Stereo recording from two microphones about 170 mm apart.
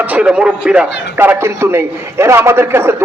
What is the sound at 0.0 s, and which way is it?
A man's voice, 10° right (ahead or behind).